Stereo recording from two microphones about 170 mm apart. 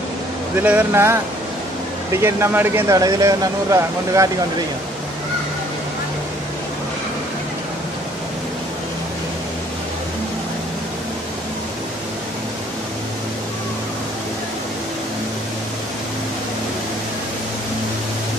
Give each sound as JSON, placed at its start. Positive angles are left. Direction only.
{"t": 0.6, "sound": "speech", "side_deg": -10}
{"t": 2.2, "sound": "speech", "side_deg": -15}